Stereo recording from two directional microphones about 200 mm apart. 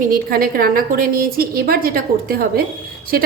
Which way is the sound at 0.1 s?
45° right (ahead or behind).